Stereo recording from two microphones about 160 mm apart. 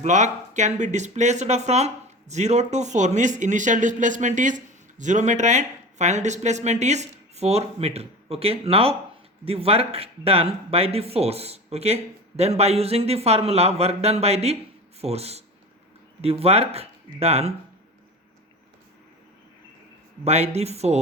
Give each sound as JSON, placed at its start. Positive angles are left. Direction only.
{"t": 0.0, "sound": "speech", "side_deg": -50}
{"t": 20.2, "sound": "speech", "side_deg": -40}